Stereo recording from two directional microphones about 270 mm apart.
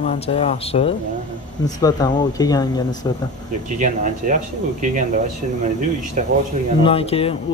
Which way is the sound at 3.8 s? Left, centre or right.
Right.